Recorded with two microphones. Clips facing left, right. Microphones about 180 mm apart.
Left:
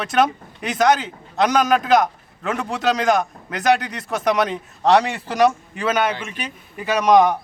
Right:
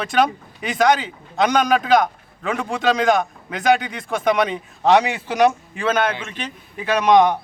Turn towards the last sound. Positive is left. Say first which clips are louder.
# even
turn(degrees=0)  # may be behind; listen again after turning